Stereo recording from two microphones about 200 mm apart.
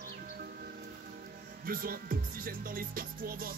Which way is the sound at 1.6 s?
45° right (ahead or behind).